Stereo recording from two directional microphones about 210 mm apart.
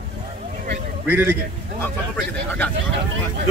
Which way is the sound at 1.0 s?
10° right (ahead or behind).